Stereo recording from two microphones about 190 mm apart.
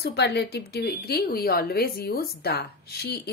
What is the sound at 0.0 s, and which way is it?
A woman's voice, 60° left (ahead or behind).